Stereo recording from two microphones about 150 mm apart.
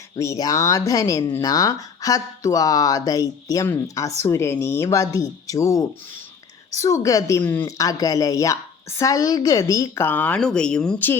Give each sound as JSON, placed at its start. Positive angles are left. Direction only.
{"t": 0.2, "sound": "a woman's voice", "side_deg": 25}